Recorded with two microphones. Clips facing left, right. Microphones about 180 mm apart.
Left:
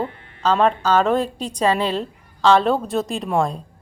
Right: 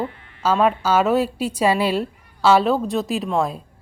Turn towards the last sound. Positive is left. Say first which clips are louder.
# even
turn(degrees=-5)  # may be behind; listen again after turning